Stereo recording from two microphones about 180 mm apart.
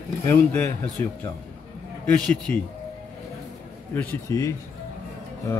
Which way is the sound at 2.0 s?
5° left (ahead or behind).